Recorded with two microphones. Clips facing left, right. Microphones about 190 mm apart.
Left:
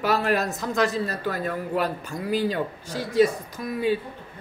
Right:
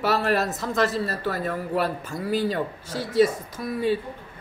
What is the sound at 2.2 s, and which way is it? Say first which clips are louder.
Speech: even; 5° left (ahead or behind).